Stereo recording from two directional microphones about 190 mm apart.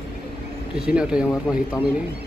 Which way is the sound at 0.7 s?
5° right (ahead or behind).